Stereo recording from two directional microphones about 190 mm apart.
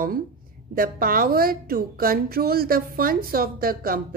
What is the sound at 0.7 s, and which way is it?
A woman's voice, 50° right (ahead or behind).